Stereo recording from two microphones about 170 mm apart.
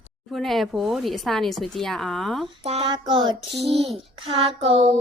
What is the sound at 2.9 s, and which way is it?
Child singing, 25° right (ahead or behind).